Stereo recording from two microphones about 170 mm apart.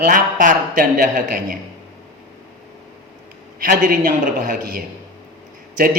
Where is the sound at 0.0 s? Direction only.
50° right (ahead or behind).